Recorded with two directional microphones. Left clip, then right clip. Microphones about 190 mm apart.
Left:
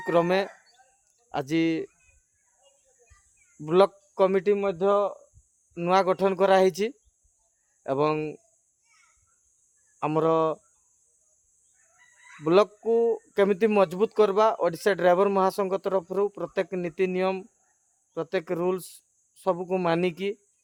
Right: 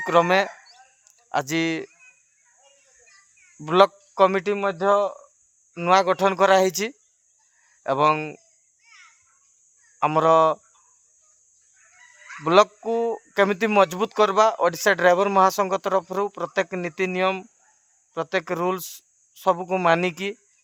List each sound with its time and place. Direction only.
0.0 s a sound: 20° right (ahead or behind)
1.3 s speech: 20° right (ahead or behind)
3.6 s speech: 20° right (ahead or behind)
10.0 s speech: 20° right (ahead or behind)
12.4 s speech: 20° right (ahead or behind)